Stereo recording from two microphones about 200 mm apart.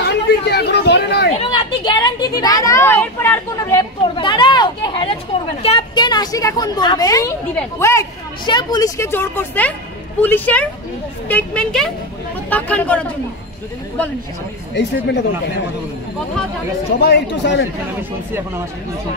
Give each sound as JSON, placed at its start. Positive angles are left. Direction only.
{"t": 0.0, "sound": "chatter", "side_deg": 55}
{"t": 1.4, "sound": "a sound", "side_deg": 25}
{"t": 4.2, "sound": "speech", "side_deg": 25}
{"t": 17.0, "sound": "speech", "side_deg": 60}